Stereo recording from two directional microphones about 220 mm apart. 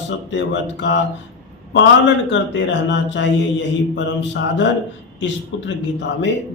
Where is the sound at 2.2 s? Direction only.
55° left (ahead or behind).